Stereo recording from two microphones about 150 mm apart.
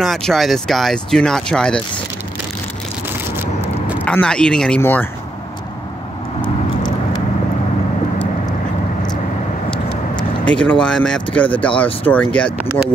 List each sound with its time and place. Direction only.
0.0 s speech: centre (ahead or behind)
3.3 s vehicle: 10° right (ahead or behind)
4.0 s speech: 5° left (ahead or behind)
9.7 s vehicle: 35° left (ahead or behind)
10.4 s speech: 5° left (ahead or behind)